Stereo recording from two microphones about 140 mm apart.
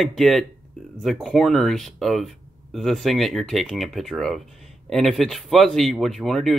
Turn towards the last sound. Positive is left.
turn(degrees=0)  # may be behind; listen again after turning